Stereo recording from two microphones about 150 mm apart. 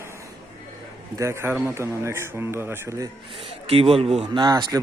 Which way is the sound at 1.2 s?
15° right (ahead or behind).